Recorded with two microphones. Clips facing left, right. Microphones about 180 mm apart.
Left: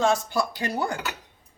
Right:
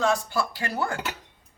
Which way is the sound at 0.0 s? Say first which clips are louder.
Left 2 dB; 20° left (ahead or behind).